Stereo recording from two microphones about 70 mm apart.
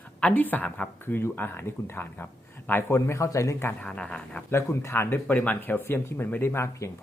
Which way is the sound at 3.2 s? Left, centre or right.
Left.